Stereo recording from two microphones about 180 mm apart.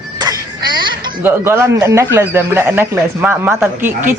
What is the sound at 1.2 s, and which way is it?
A man's voice, 15° right (ahead or behind).